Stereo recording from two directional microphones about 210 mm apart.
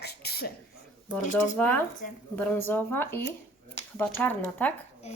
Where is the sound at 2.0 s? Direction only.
40° left (ahead or behind).